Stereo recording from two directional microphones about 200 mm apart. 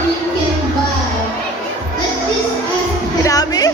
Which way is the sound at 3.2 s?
20° left (ahead or behind).